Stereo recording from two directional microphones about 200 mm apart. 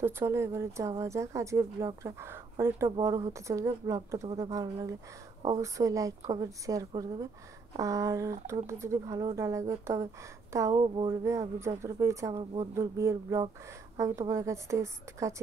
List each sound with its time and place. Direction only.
0.0 s speech: 15° right (ahead or behind)
11.2 s speech: 15° right (ahead or behind)